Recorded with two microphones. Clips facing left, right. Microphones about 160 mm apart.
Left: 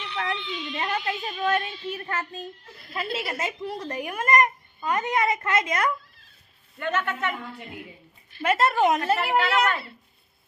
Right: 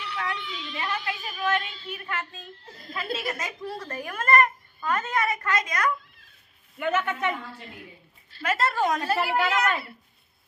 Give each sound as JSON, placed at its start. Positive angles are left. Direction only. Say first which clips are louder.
{"t": 0.0, "sound": "speech", "louder": "left 2 dB", "side_deg": 20}
{"t": 2.9, "sound": "speech", "louder": "left 1 dB", "side_deg": 30}
{"t": 6.8, "sound": "a man's voice", "louder": "right 1 dB", "side_deg": -10}
{"t": 8.3, "sound": "speech", "louder": "left 4 dB", "side_deg": 20}